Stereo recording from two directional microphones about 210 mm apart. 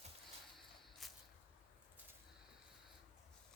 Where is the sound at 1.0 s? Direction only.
Centre (ahead or behind).